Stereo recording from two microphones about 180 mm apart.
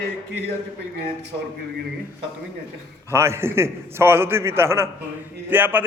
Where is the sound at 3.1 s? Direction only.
15° right (ahead or behind).